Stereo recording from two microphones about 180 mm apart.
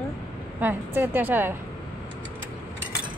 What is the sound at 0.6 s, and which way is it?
Speech, 10° right (ahead or behind).